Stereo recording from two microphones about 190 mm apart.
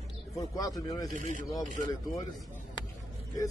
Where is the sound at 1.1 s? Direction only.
40° right (ahead or behind).